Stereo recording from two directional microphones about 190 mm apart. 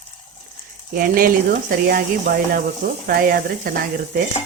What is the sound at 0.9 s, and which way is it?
A woman's voice, 50° right (ahead or behind).